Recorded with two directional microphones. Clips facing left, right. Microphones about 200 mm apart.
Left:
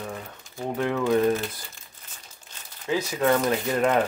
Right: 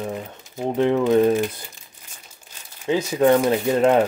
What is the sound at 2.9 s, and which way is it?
Speech, 25° right (ahead or behind).